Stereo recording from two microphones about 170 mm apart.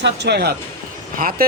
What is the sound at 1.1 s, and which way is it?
Speech, 55° right (ahead or behind).